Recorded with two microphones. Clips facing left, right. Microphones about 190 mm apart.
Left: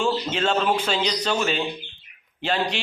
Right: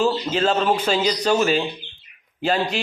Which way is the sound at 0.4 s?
35° right (ahead or behind).